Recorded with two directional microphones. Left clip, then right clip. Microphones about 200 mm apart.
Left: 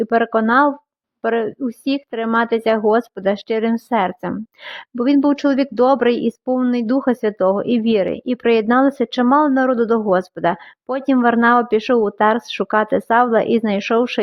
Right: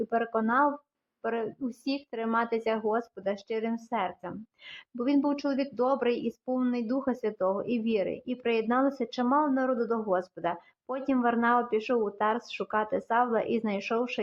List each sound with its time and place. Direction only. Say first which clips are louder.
0.0 s speech: left 12 dB; 40° left (ahead or behind)